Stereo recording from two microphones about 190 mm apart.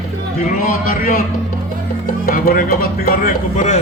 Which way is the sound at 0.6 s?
45° left (ahead or behind).